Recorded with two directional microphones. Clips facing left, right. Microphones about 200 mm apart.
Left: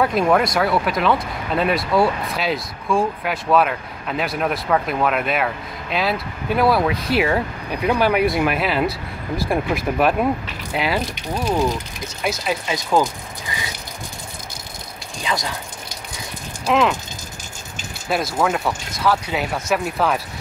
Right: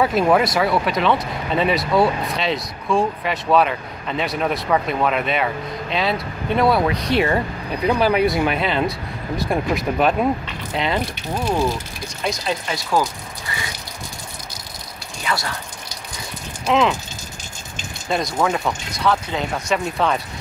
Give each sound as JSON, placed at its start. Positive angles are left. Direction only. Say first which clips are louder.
{"t": 0.0, "sound": "speech", "louder": "right 1 dB", "side_deg": 0}
{"t": 15.2, "sound": "speech", "louder": "even", "side_deg": 15}
{"t": 16.6, "sound": "speech", "louder": "even", "side_deg": 0}
{"t": 18.0, "sound": "speech", "louder": "even", "side_deg": 5}